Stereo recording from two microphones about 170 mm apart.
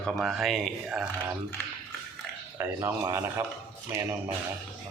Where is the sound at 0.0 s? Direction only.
Centre (ahead or behind).